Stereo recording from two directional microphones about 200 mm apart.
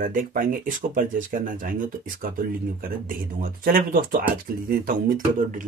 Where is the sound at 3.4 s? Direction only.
45° right (ahead or behind).